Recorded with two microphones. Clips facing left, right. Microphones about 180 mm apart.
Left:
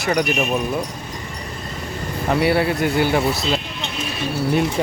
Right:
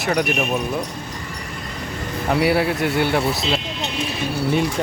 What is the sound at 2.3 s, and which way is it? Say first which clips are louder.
Speech: even; centre (ahead or behind).